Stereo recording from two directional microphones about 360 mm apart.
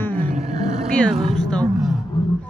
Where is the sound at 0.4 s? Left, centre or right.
Centre.